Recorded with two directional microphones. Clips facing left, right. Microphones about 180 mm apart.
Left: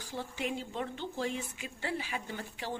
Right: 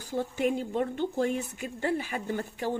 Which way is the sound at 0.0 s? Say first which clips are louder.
Right 9 dB; 50° right (ahead or behind).